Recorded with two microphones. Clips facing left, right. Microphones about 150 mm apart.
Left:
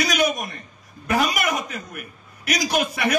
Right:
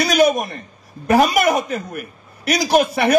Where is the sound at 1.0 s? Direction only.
40° right (ahead or behind).